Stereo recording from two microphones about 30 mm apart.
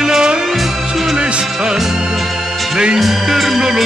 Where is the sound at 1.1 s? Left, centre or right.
Right.